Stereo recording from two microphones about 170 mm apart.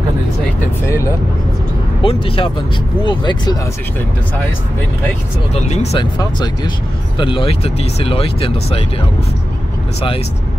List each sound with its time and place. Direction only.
0.8 s speech: 15° left (ahead or behind)
2.0 s speech: 30° left (ahead or behind)
5.5 s speech: 40° left (ahead or behind)
6.1 s speech: 25° left (ahead or behind)